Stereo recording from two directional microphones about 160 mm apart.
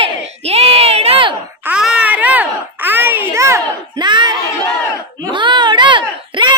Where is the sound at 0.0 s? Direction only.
40° right (ahead or behind).